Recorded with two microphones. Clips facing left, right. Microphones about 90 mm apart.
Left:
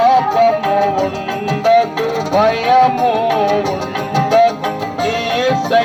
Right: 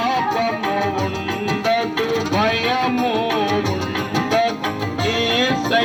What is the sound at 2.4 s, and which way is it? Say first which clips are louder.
Music: left 12 dB; 25° left (ahead or behind).